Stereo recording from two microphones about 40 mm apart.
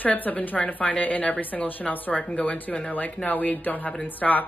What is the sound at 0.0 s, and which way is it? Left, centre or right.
Speech, left.